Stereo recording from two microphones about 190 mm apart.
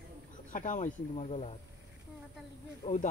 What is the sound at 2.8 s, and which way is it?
Speech, 40° left (ahead or behind).